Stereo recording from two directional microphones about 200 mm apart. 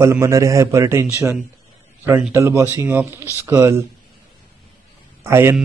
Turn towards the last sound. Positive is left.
turn(degrees=-10)  # may be behind; listen again after turning